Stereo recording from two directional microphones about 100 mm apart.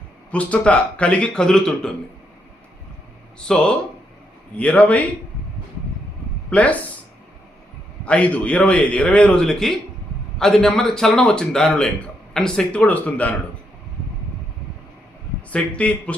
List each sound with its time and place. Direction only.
0.3 s a man's voice: 15° left (ahead or behind)
3.4 s a man's voice: 10° left (ahead or behind)
6.5 s speech: 15° left (ahead or behind)
8.0 s a man's voice: 15° left (ahead or behind)
15.5 s a man's voice: 15° left (ahead or behind)